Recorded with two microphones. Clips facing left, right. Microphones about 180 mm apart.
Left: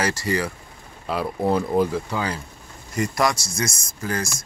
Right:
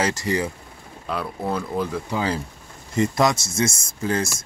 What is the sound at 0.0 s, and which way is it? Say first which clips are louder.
Speech: right 1 dB; 20° right (ahead or behind).